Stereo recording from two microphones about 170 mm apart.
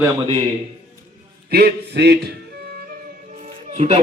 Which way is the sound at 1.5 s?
65° right (ahead or behind).